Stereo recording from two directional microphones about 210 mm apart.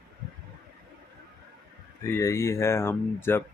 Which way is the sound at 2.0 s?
15° left (ahead or behind).